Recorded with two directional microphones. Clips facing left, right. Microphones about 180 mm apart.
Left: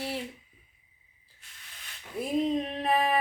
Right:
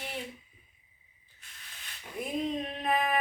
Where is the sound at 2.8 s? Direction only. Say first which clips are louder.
Left 2 dB; 30° left (ahead or behind).